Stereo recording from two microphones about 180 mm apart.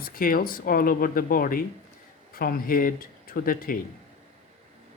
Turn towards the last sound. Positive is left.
turn(degrees=50)  # may be behind; listen again after turning